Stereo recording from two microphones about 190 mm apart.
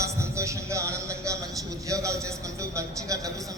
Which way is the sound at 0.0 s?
15° right (ahead or behind).